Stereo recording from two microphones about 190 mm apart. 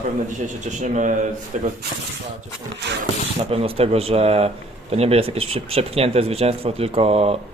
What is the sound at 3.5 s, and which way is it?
Speech, 30° right (ahead or behind).